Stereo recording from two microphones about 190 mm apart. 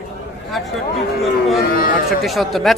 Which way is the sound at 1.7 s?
50° left (ahead or behind).